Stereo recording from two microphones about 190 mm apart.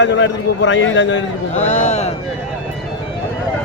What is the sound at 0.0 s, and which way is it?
A man's voice, 80° left.